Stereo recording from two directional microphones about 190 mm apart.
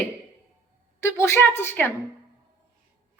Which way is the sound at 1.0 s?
10° left (ahead or behind).